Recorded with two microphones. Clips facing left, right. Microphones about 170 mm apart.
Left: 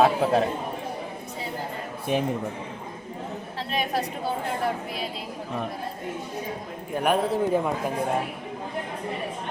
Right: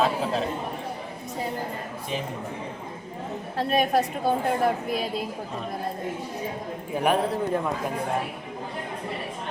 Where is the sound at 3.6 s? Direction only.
45° right (ahead or behind).